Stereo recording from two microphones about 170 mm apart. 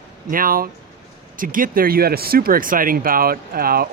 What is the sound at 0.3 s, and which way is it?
Speech, 55° right (ahead or behind).